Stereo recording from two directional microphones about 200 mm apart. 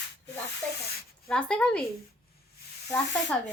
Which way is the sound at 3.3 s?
5° left (ahead or behind).